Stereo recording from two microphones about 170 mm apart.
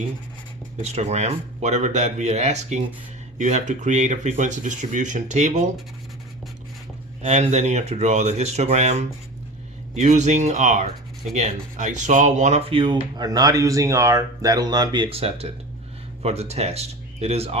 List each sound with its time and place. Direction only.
0.8 s speech: 40° right (ahead or behind)
7.2 s speech: 40° right (ahead or behind)